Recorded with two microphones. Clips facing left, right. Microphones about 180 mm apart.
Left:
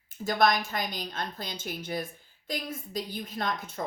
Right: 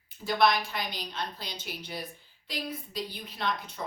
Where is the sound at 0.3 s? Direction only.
45° left (ahead or behind).